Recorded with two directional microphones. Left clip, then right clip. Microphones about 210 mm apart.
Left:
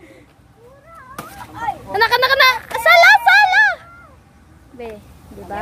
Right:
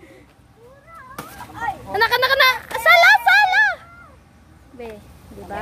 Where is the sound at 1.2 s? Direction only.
Centre (ahead or behind).